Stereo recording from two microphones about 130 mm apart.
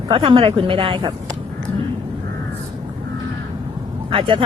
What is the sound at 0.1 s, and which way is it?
A woman's voice, 45° right (ahead or behind).